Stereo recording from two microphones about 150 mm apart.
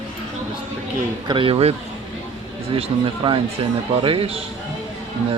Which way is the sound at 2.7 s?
40° right (ahead or behind).